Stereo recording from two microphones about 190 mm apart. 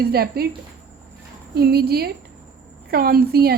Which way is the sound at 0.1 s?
55° right (ahead or behind).